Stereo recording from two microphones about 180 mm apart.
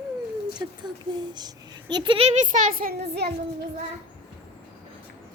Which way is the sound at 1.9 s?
25° right (ahead or behind).